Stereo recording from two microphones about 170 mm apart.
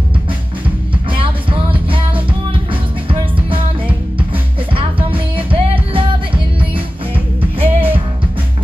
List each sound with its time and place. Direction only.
1.1 s music: 30° right (ahead or behind)